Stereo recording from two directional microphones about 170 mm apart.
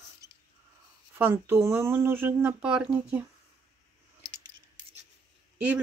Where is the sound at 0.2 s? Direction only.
20° right (ahead or behind).